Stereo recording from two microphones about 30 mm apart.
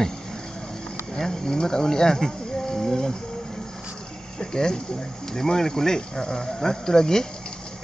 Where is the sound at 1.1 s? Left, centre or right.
Centre.